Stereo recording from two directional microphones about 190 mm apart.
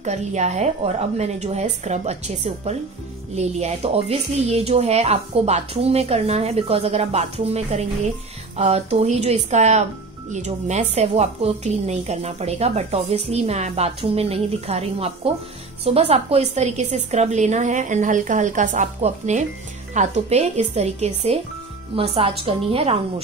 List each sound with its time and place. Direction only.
0.0 s a woman's voice: 35° right (ahead or behind)